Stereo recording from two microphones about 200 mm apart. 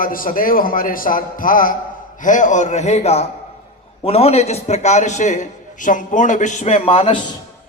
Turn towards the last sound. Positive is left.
turn(degrees=30)  # may be behind; listen again after turning